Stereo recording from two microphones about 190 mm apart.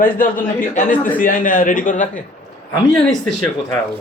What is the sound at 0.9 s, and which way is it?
Speech, 10° left (ahead or behind).